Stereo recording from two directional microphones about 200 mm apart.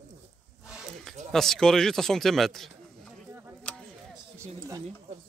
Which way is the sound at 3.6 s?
5° left (ahead or behind).